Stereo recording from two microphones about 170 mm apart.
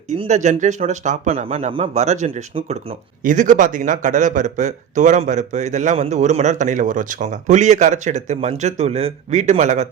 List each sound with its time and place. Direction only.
0.1 s a man's voice: 45° right (ahead or behind)